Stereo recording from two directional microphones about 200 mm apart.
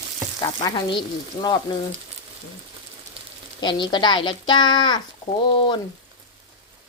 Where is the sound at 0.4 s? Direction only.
20° left (ahead or behind).